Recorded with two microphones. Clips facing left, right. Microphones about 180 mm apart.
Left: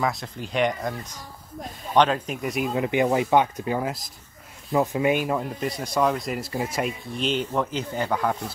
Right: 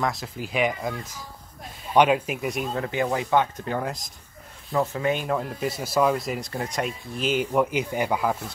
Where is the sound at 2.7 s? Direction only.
15° left (ahead or behind).